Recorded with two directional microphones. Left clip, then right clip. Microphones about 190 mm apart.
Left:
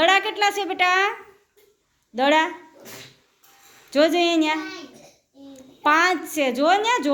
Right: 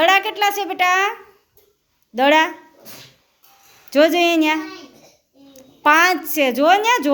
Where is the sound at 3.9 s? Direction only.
20° right (ahead or behind).